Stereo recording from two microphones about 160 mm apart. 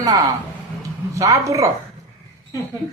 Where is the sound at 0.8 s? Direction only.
20° right (ahead or behind).